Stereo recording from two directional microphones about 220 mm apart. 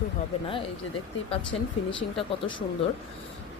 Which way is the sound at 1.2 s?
25° left (ahead or behind).